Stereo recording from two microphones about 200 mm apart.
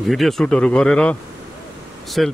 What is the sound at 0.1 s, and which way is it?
Speech, centre (ahead or behind).